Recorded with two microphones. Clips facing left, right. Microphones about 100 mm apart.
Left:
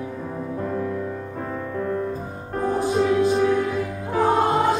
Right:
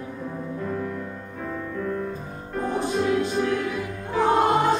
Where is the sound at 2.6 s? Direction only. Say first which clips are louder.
Left 4 dB; 5° left (ahead or behind).